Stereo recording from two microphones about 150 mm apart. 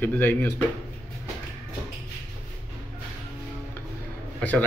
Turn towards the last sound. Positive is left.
turn(degrees=10)  # may be behind; listen again after turning